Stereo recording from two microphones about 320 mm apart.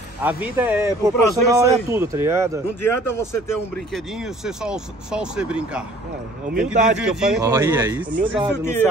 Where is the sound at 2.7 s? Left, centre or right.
Centre.